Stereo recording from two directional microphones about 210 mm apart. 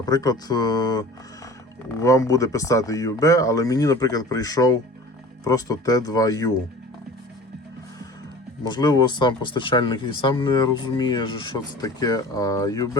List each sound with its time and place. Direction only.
0.0 s speech: 20° left (ahead or behind)
8.6 s speech: 20° left (ahead or behind)